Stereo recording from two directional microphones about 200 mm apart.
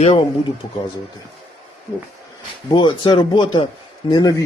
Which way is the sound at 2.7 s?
20° left (ahead or behind).